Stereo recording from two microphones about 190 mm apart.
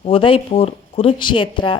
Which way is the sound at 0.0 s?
30° left (ahead or behind).